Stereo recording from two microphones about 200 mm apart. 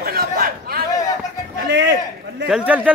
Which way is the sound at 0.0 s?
50° right (ahead or behind).